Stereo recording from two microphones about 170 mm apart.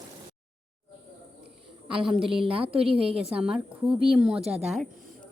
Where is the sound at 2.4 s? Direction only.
30° right (ahead or behind).